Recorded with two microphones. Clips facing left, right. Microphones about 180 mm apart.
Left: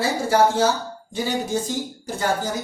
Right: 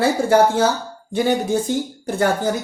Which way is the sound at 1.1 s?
55° right (ahead or behind).